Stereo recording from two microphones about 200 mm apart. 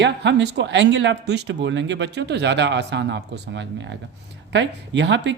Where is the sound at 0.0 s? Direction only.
60° right (ahead or behind).